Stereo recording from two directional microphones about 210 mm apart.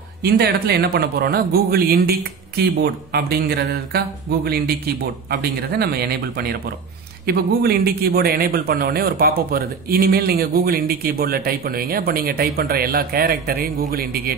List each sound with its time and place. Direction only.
0.2 s a man's voice: 50° right (ahead or behind)
5.3 s a man's voice: 50° right (ahead or behind)